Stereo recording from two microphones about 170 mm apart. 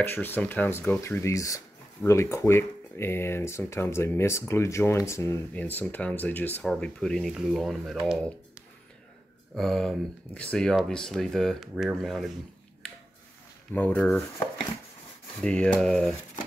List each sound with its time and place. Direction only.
0.0 s speech: 10° left (ahead or behind)
9.6 s speech: centre (ahead or behind)
13.7 s speech: 10° left (ahead or behind)
15.4 s speech: 5° left (ahead or behind)